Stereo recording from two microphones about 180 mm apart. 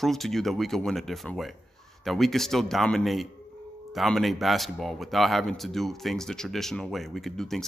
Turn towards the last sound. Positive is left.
turn(degrees=0)  # may be behind; listen again after turning